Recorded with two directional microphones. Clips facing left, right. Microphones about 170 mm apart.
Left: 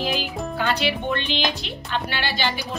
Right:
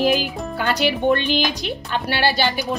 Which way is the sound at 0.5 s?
45° right (ahead or behind).